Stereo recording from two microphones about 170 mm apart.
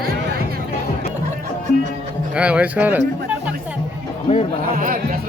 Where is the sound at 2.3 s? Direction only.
5° right (ahead or behind).